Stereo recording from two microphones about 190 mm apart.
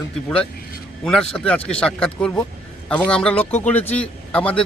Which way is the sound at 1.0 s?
5° left (ahead or behind).